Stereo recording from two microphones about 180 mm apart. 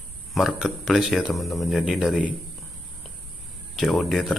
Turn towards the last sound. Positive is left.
turn(degrees=0)  # may be behind; listen again after turning